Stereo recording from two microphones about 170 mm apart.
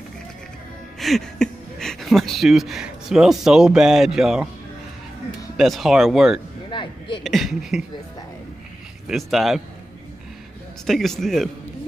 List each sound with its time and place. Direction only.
0.9 s speech: centre (ahead or behind)
5.6 s speech: centre (ahead or behind)
6.7 s a sound: 30° left (ahead or behind)
7.2 s speech: centre (ahead or behind)
9.0 s speech: centre (ahead or behind)
10.9 s speech: centre (ahead or behind)